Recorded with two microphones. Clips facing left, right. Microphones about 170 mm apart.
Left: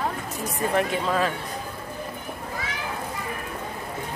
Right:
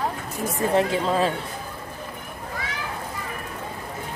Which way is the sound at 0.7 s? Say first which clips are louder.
Right 3 dB; 30° right (ahead or behind).